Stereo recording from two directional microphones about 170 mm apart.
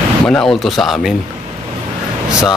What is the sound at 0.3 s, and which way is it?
Speech, 5° left (ahead or behind).